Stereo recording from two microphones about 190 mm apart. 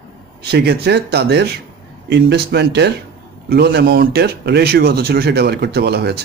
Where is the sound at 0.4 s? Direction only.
60° right (ahead or behind).